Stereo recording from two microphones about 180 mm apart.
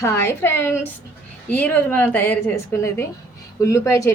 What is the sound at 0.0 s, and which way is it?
A woman's voice, 15° left (ahead or behind).